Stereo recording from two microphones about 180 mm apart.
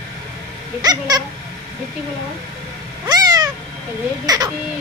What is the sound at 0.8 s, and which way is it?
Cat, 20° right (ahead or behind).